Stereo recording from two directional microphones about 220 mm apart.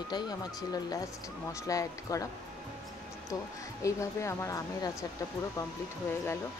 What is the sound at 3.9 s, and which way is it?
Speech, 15° left (ahead or behind).